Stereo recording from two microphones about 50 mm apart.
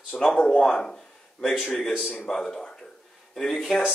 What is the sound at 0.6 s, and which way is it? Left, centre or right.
Speech, centre.